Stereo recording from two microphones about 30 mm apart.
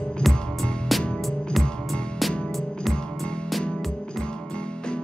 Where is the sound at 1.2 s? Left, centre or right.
Centre.